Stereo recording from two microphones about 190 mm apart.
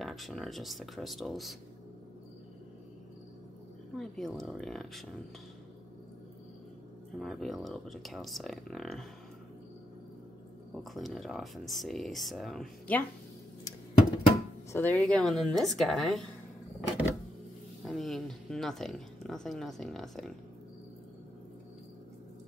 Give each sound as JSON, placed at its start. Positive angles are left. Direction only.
{"t": 0.0, "sound": "speech", "side_deg": 0}
{"t": 3.9, "sound": "speech", "side_deg": 0}
{"t": 7.2, "sound": "speech", "side_deg": 0}
{"t": 10.8, "sound": "speech", "side_deg": 0}
{"t": 14.7, "sound": "speech", "side_deg": 10}
{"t": 17.8, "sound": "speech", "side_deg": 0}